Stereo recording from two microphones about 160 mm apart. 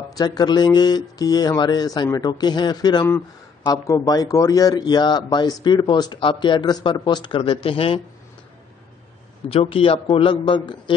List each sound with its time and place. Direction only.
0.2 s a man's voice: 25° left (ahead or behind)
9.5 s a man's voice: 35° left (ahead or behind)